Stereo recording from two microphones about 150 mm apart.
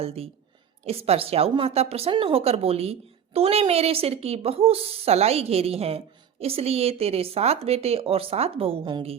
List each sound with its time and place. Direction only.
0.0 s a woman's voice: 40° right (ahead or behind)